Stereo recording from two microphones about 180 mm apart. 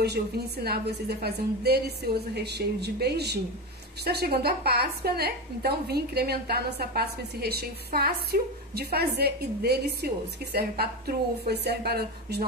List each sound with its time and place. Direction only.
0.0 s a woman's voice: 65° right (ahead or behind)